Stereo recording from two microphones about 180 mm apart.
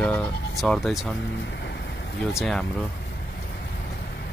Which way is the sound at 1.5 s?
70° left (ahead or behind).